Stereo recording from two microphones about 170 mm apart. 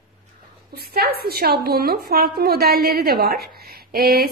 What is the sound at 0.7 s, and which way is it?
Speech, 65° right (ahead or behind).